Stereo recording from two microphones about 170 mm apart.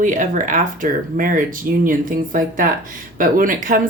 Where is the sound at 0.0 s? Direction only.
50° right (ahead or behind).